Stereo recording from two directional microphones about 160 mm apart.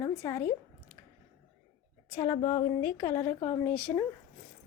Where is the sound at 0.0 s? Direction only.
20° left (ahead or behind).